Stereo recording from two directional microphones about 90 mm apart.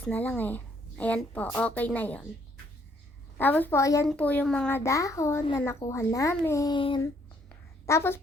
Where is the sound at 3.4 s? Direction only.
20° left (ahead or behind).